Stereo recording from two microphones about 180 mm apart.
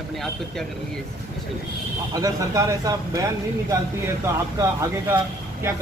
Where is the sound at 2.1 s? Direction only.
20° right (ahead or behind).